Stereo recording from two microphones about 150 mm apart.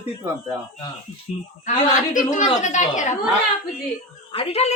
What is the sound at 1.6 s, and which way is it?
A woman's voice, 60° left (ahead or behind).